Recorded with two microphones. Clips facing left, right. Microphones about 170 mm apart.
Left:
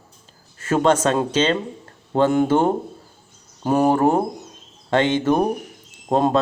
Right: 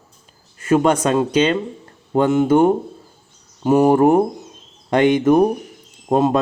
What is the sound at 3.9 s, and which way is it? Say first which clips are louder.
Speech: right 4 dB; 20° right (ahead or behind).